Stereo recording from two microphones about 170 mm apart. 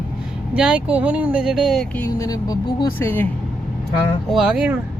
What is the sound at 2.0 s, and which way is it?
Speech, 20° left (ahead or behind).